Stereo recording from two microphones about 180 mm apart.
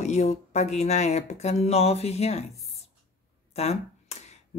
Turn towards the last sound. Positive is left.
turn(degrees=35)  # may be behind; listen again after turning